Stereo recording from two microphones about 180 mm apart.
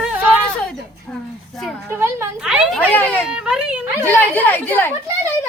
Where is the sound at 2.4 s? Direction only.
5° right (ahead or behind).